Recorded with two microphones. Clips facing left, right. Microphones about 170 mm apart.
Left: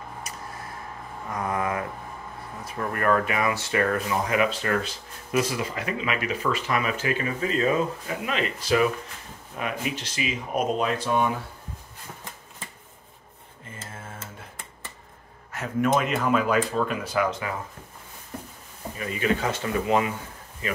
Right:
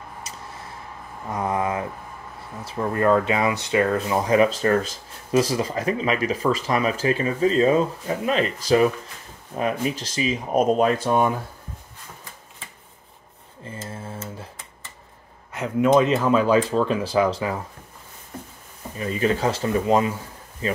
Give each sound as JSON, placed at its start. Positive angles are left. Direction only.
{"t": 1.3, "sound": "a sound", "side_deg": -25}
{"t": 2.6, "sound": "speech", "side_deg": -25}
{"t": 15.5, "sound": "speech", "side_deg": -20}
{"t": 18.9, "sound": "speech", "side_deg": -35}